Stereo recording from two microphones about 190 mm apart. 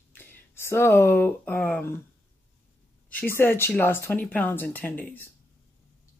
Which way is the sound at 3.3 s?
10° left (ahead or behind).